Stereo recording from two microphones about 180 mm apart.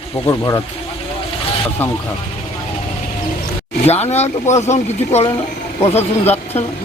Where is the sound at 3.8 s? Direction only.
35° left (ahead or behind).